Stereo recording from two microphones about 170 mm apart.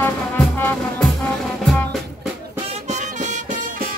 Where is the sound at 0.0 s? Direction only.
10° left (ahead or behind).